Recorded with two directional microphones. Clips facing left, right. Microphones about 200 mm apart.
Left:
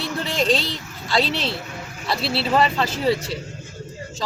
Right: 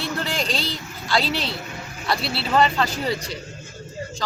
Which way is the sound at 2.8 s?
25° left (ahead or behind).